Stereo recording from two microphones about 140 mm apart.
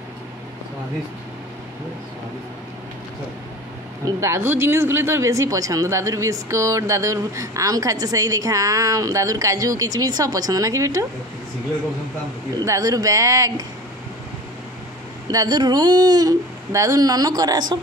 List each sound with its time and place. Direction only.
4.5 s speech: 15° right (ahead or behind)
12.6 s speech: 25° right (ahead or behind)
15.2 s speech: 30° right (ahead or behind)